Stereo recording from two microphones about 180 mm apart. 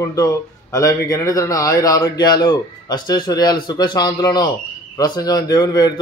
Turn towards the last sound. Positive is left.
turn(degrees=20)  # may be behind; listen again after turning